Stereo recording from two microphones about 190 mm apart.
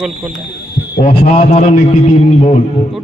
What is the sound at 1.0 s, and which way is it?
A man's voice, 35° left (ahead or behind).